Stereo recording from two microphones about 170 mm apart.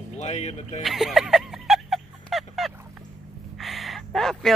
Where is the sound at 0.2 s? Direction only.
40° left (ahead or behind).